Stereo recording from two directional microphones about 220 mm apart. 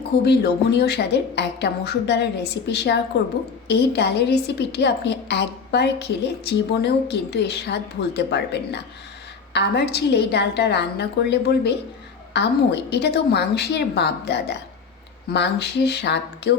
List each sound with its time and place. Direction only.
0.3 s a woman's voice: 50° left (ahead or behind)